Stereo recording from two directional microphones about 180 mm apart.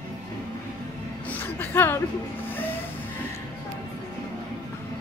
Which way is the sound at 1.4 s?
10° left (ahead or behind).